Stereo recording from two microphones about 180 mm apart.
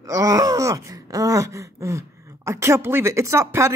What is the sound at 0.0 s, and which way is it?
Wail, 20° right (ahead or behind).